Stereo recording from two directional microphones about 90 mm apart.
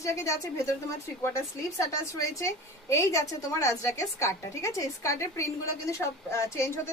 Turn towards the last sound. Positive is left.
turn(degrees=30)  # may be behind; listen again after turning